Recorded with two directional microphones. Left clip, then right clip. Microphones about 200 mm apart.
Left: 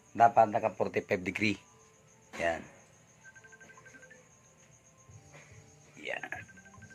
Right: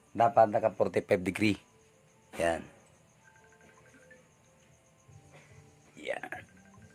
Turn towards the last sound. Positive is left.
turn(degrees=-55)  # may be behind; listen again after turning